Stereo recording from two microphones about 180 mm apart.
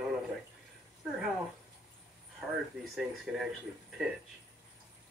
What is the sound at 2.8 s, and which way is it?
Speech, centre (ahead or behind).